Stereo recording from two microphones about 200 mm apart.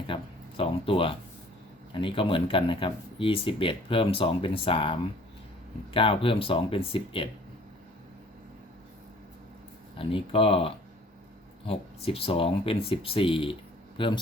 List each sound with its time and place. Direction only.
0.1 s speech: 30° left (ahead or behind)
10.0 s speech: 25° left (ahead or behind)